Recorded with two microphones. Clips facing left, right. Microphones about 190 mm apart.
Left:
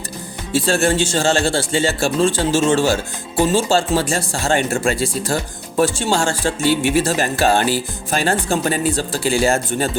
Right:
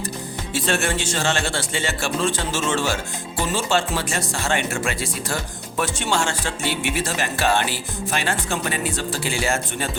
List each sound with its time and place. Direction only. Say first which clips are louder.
0.5 s music: left 6 dB; 30° left (ahead or behind)